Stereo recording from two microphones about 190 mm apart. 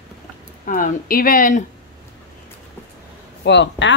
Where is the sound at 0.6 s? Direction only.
45° left (ahead or behind).